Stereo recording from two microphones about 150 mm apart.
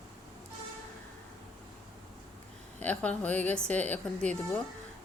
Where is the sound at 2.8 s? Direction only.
10° left (ahead or behind).